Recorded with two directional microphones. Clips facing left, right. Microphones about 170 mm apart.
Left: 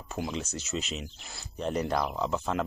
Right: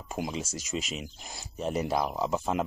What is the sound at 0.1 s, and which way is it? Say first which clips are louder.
Speech: even; 10° right (ahead or behind).